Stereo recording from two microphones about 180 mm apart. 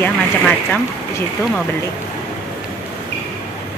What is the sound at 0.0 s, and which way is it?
Speech, 5° left (ahead or behind).